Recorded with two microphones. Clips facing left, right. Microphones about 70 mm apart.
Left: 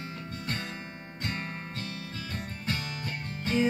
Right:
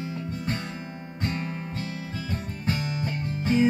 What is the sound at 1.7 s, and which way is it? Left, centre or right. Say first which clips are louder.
Music: right 5 dB; centre.